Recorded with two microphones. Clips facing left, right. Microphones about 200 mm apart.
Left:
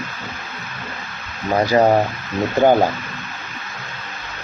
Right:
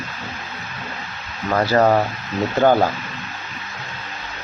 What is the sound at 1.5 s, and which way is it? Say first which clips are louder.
Speech: left 1 dB; 15° left (ahead or behind).